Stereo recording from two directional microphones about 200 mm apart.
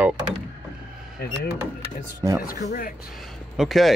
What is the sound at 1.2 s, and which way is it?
Speech, 50° left (ahead or behind).